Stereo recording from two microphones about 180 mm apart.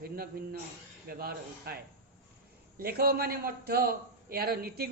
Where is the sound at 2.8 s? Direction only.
60° right (ahead or behind).